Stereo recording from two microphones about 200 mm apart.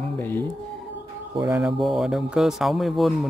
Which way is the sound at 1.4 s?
Centre (ahead or behind).